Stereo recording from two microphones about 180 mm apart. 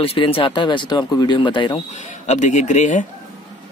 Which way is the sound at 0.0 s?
30° left (ahead or behind).